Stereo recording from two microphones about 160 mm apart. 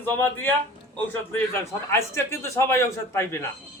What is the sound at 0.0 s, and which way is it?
A man's voice, 15° left (ahead or behind).